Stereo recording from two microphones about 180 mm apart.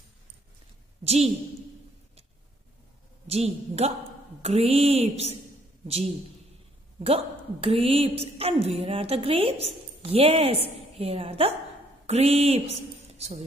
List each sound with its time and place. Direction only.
1.0 s a woman's voice: 35° right (ahead or behind)
3.3 s a woman's voice: 35° right (ahead or behind)